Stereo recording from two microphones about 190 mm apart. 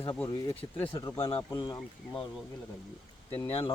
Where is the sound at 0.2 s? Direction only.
10° left (ahead or behind).